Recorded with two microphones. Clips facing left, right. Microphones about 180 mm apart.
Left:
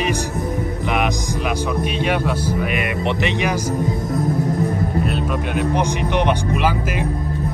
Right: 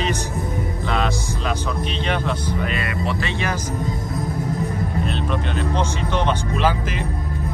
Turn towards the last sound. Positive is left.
turn(degrees=10)  # may be behind; listen again after turning